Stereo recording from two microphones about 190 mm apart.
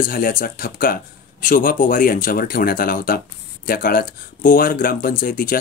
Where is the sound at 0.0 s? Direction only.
45° left (ahead or behind).